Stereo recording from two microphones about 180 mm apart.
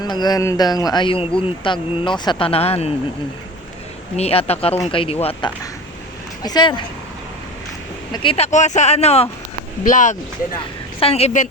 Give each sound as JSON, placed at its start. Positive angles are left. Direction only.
{"t": 0.0, "sound": "speech", "side_deg": 20}
{"t": 4.2, "sound": "speech", "side_deg": 35}
{"t": 8.1, "sound": "speech", "side_deg": 30}
{"t": 9.8, "sound": "speech", "side_deg": 45}
{"t": 10.6, "sound": "a woman's voice", "side_deg": 35}